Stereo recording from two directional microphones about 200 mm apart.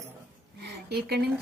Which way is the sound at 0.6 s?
55° right (ahead or behind).